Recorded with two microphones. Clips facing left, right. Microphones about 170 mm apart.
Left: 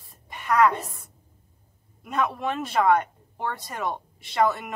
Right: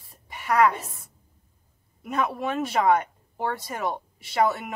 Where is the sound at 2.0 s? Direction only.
5° right (ahead or behind).